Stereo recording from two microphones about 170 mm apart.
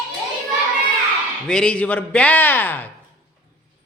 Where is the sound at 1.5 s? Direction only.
5° left (ahead or behind).